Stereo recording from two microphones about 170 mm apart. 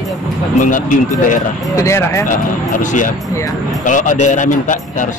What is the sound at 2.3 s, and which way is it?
Speech, 50° left (ahead or behind).